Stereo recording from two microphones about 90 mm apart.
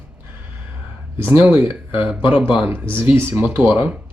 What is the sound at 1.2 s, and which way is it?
Speech, 20° right (ahead or behind).